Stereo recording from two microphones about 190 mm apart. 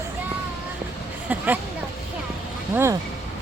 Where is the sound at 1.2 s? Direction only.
10° right (ahead or behind).